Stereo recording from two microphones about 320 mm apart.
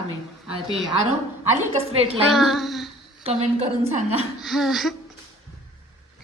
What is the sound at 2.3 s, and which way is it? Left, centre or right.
Speech, centre.